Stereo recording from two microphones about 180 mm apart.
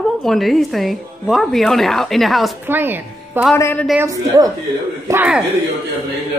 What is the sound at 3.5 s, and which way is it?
Speech, 10° left (ahead or behind).